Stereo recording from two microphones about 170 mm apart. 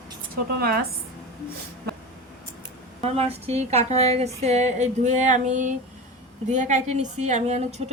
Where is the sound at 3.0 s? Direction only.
35° right (ahead or behind).